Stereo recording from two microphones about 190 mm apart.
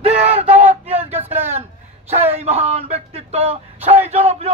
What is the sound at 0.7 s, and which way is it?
Speech, 30° right (ahead or behind).